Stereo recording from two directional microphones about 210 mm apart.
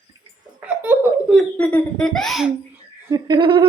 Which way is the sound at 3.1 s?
20° right (ahead or behind).